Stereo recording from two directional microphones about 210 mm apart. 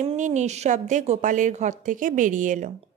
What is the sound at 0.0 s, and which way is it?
A woman's voice, 35° right (ahead or behind).